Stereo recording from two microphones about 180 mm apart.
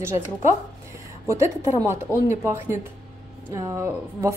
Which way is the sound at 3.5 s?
15° right (ahead or behind).